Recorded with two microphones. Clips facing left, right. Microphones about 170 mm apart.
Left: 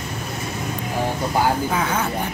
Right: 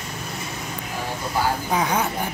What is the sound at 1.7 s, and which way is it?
Speech, 15° right (ahead or behind).